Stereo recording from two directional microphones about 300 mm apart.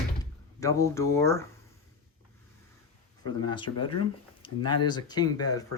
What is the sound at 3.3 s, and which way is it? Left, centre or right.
Speech, centre.